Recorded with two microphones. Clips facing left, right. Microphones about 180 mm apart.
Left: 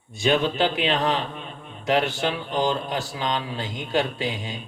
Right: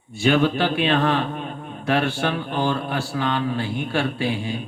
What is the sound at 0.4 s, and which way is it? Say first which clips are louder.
Mantra: right 2 dB; 20° left (ahead or behind).